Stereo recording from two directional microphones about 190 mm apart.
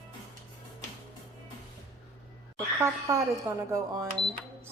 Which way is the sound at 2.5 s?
15° right (ahead or behind).